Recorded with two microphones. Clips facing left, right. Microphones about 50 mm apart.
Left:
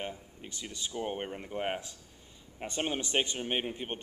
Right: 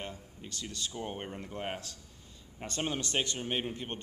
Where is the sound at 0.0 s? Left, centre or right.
Centre.